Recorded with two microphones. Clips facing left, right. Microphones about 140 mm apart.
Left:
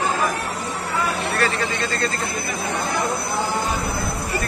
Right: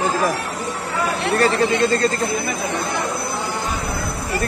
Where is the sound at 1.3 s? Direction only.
40° right (ahead or behind).